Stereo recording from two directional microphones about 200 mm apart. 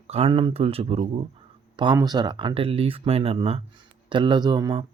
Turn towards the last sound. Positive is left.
turn(degrees=-25)  # may be behind; listen again after turning